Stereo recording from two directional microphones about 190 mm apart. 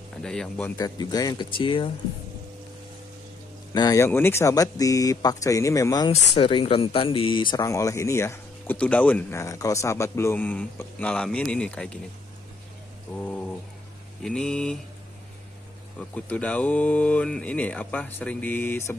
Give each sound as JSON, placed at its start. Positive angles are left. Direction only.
{"t": 0.2, "sound": "mantra", "side_deg": 5}
{"t": 0.7, "sound": "speech", "side_deg": 20}
{"t": 3.7, "sound": "speech", "side_deg": 20}
{"t": 7.5, "sound": "speech", "side_deg": 15}
{"t": 13.1, "sound": "speech", "side_deg": 5}
{"t": 14.2, "sound": "mantra", "side_deg": 5}
{"t": 16.0, "sound": "speech", "side_deg": 5}